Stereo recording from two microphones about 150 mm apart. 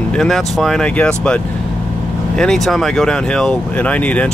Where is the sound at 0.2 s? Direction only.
5° left (ahead or behind).